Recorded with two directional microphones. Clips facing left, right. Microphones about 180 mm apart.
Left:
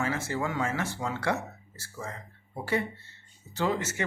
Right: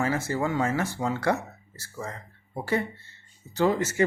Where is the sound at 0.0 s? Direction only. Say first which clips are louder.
Right 4 dB; 40° right (ahead or behind).